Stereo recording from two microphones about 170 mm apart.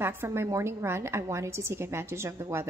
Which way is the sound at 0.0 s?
15° right (ahead or behind).